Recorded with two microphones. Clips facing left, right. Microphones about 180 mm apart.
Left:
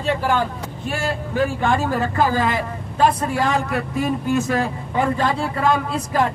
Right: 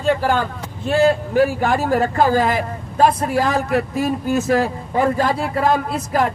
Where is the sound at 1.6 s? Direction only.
40° right (ahead or behind).